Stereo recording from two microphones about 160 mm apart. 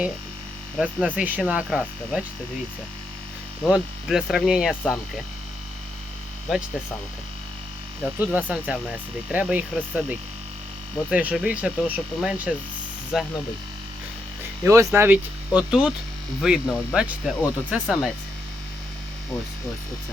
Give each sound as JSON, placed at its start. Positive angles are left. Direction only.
{"t": 0.8, "sound": "speech", "side_deg": -5}
{"t": 3.6, "sound": "speech", "side_deg": 0}
{"t": 8.2, "sound": "speech", "side_deg": -10}
{"t": 14.6, "sound": "speech", "side_deg": -20}